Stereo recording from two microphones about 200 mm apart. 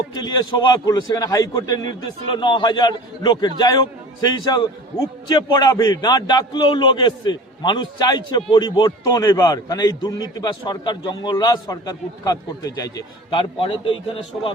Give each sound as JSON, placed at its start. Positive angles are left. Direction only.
{"t": 0.2, "sound": "a man's voice", "side_deg": 20}